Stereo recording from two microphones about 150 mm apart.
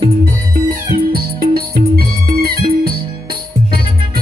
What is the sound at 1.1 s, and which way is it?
Music, 85° right.